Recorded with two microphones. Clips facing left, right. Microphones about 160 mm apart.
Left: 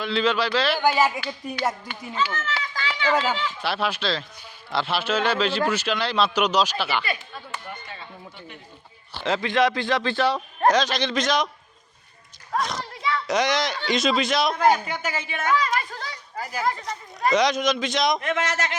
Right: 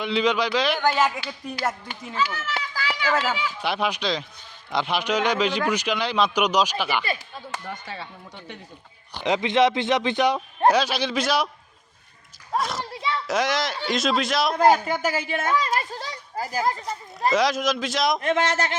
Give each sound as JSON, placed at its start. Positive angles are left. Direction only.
{"t": 0.0, "sound": "a man's voice", "side_deg": -15}
{"t": 0.8, "sound": "a man's voice", "side_deg": 5}
{"t": 9.1, "sound": "a man's voice", "side_deg": -15}
{"t": 12.5, "sound": "a man's voice", "side_deg": -5}
{"t": 14.6, "sound": "speech", "side_deg": -40}
{"t": 17.3, "sound": "a man's voice", "side_deg": -5}
{"t": 18.2, "sound": "speech", "side_deg": -30}